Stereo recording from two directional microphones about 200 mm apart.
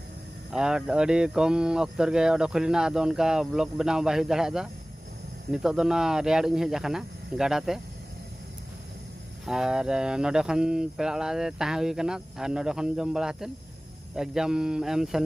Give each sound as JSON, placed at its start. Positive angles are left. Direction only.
{"t": 0.5, "sound": "speech", "side_deg": -5}
{"t": 9.5, "sound": "speech", "side_deg": -5}